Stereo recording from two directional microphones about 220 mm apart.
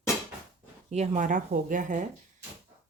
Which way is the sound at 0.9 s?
30° right (ahead or behind).